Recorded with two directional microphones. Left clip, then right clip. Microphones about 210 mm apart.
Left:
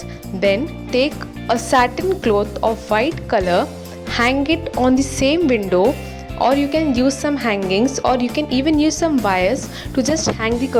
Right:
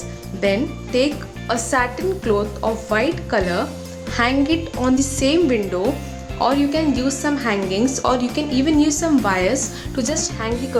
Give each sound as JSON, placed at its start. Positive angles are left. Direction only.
{"t": 0.4, "sound": "a woman's voice", "side_deg": 35}